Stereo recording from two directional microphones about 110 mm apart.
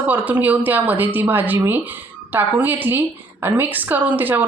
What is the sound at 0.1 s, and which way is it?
A woman's voice, 15° right (ahead or behind).